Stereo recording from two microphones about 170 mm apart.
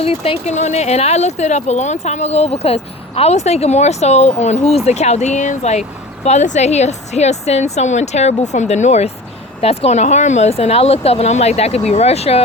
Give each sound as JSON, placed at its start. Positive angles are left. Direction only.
{"t": 0.0, "sound": "speech", "side_deg": 35}